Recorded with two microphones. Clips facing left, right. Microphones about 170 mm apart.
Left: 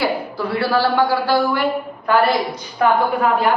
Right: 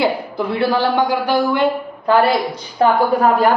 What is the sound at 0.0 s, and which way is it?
A woman's voice, 20° right (ahead or behind).